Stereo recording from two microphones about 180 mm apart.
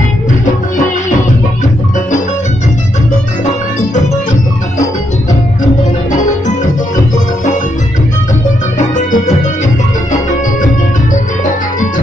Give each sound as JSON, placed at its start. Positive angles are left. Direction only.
{"t": 8.7, "sound": "music", "side_deg": 45}